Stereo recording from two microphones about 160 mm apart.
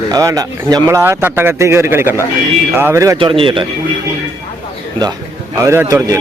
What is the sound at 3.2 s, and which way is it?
Speech, 35° right (ahead or behind).